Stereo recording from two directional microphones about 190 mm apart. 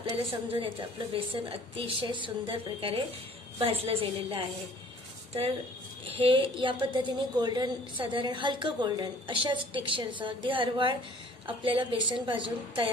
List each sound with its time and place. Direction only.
0.0 s a woman's voice: 30° right (ahead or behind)
6.0 s a woman's voice: 30° right (ahead or behind)